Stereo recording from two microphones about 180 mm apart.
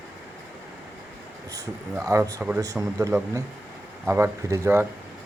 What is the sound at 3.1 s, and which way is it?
Speech, 15° right (ahead or behind).